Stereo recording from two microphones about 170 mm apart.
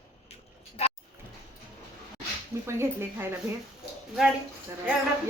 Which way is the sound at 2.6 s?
15° right (ahead or behind).